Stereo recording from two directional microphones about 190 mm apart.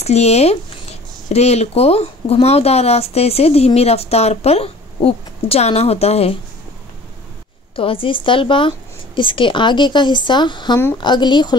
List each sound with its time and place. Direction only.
0.0 s speech: 35° left (ahead or behind)
7.7 s speech: 30° left (ahead or behind)